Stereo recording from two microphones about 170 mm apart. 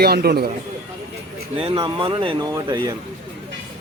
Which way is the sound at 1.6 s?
30° right (ahead or behind).